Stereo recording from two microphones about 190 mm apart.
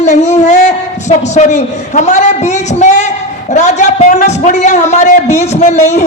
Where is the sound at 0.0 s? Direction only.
35° left (ahead or behind).